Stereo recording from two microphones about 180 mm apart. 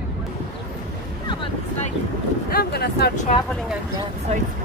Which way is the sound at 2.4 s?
60° left (ahead or behind).